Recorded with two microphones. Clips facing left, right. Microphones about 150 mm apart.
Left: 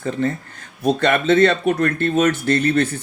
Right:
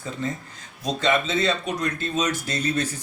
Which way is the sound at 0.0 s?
60° left (ahead or behind).